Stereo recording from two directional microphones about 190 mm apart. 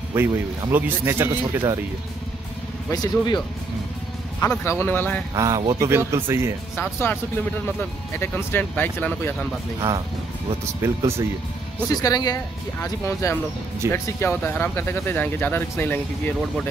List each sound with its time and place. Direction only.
0.1 s speech: 10° right (ahead or behind)
2.9 s speech: 20° left (ahead or behind)
4.4 s speech: 15° left (ahead or behind)
5.3 s speech: 20° right (ahead or behind)
6.8 s speech: 10° left (ahead or behind)
9.8 s speech: 20° right (ahead or behind)
11.9 s speech: 20° left (ahead or behind)